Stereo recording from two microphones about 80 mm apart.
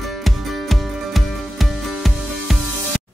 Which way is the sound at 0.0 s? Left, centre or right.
Centre.